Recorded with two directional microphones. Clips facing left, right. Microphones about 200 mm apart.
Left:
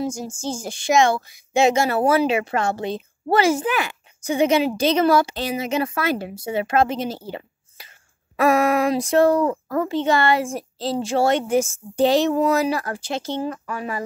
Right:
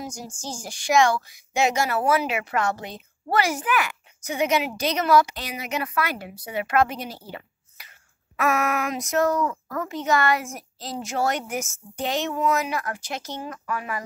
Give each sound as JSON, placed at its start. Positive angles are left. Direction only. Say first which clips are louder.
{"t": 0.0, "sound": "a woman's voice", "louder": "left 9 dB", "side_deg": 25}
{"t": 7.2, "sound": "a sound", "louder": "left 6 dB", "side_deg": 25}
{"t": 8.4, "sound": "speech", "louder": "left 6 dB", "side_deg": 30}